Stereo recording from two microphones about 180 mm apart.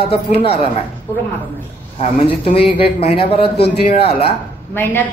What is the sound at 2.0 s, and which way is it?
A man's voice, 35° left (ahead or behind).